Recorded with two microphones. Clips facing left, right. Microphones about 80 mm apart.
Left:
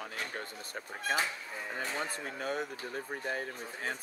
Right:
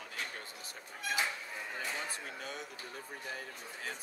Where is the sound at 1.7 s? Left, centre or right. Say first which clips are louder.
Left 4 dB; left.